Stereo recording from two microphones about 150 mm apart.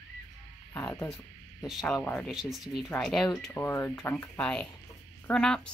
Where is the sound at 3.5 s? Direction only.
15° left (ahead or behind).